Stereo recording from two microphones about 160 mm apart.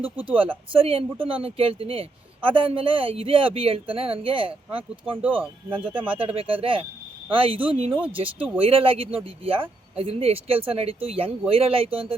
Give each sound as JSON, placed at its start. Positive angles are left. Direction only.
{"t": 0.0, "sound": "speech", "side_deg": -10}
{"t": 0.7, "sound": "speech", "side_deg": -35}
{"t": 5.2, "sound": "speech", "side_deg": -10}
{"t": 6.1, "sound": "speech", "side_deg": -35}